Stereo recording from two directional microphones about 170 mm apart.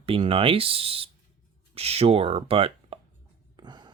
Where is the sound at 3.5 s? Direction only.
25° right (ahead or behind).